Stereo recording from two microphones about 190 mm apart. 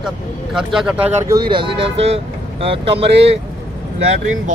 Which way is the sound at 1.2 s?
20° right (ahead or behind).